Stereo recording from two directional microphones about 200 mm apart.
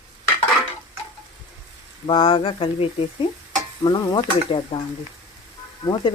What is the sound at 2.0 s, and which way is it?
Speech, 25° left (ahead or behind).